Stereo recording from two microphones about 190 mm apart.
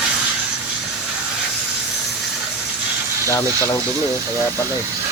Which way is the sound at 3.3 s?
15° left (ahead or behind).